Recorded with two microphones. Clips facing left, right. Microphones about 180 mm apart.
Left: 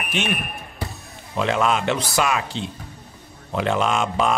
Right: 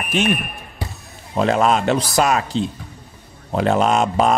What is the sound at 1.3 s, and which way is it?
Speech, 40° right (ahead or behind).